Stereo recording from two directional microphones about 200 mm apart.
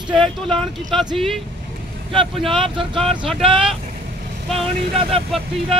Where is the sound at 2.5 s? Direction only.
25° right (ahead or behind).